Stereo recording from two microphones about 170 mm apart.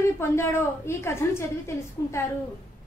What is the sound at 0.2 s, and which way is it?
A woman's voice, 15° left (ahead or behind).